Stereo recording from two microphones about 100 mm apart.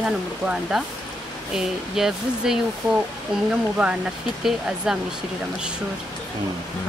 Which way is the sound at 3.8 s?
15° right (ahead or behind).